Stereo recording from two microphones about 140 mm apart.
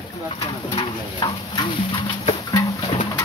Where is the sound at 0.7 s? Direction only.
35° left (ahead or behind).